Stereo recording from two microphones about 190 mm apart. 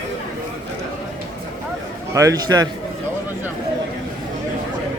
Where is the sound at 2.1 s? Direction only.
15° right (ahead or behind).